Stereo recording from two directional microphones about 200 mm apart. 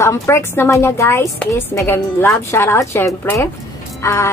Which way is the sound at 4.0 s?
15° left (ahead or behind).